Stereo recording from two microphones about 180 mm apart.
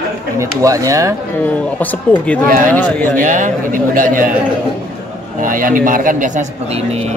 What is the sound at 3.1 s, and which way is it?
A man's voice, 45° right (ahead or behind).